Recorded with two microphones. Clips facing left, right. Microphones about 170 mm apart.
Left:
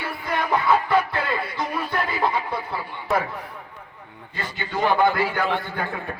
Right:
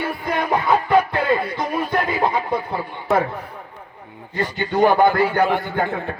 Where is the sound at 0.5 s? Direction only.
45° right (ahead or behind).